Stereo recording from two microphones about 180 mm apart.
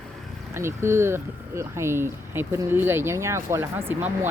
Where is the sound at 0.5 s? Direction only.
15° right (ahead or behind).